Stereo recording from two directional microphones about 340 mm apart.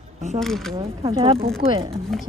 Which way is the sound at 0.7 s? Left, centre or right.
Centre.